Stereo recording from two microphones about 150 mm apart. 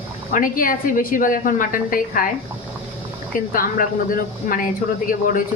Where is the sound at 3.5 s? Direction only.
65° left (ahead or behind).